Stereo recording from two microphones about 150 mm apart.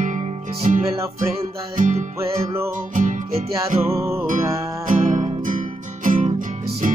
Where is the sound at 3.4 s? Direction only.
40° right (ahead or behind).